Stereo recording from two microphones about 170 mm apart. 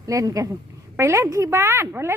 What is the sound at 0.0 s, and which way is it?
A woman's voice, 20° right (ahead or behind).